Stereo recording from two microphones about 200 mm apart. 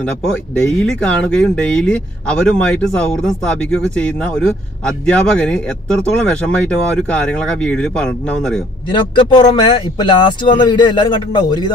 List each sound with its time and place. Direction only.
0.6 s speech: 5° left (ahead or behind)
8.9 s speech: 20° left (ahead or behind)